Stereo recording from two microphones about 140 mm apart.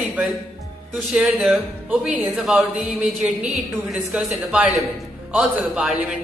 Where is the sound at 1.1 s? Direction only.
5° right (ahead or behind).